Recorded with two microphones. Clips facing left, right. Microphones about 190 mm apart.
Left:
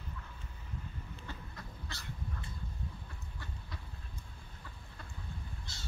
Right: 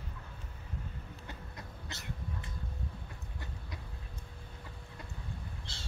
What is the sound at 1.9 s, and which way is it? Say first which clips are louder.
Cat: right 2 dB; 20° right (ahead or behind).